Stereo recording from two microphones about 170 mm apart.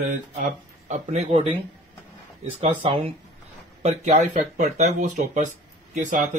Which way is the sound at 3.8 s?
45° right (ahead or behind).